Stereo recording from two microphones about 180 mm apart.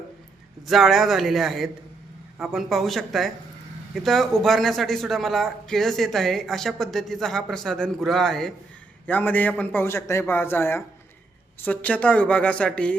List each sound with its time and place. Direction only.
0.7 s a man's voice: centre (ahead or behind)